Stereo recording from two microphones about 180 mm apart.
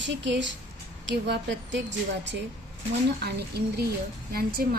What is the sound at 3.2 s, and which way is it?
A woman's voice, 65° right (ahead or behind).